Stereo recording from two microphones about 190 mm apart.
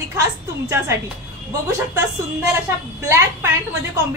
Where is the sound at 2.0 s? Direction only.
10° right (ahead or behind).